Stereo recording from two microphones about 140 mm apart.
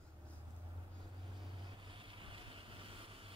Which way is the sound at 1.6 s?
35° right (ahead or behind).